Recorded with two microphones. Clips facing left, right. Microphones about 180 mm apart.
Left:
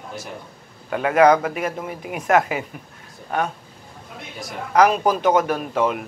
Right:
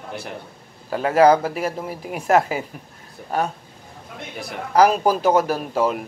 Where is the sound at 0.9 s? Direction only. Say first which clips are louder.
Even; 35° right (ahead or behind).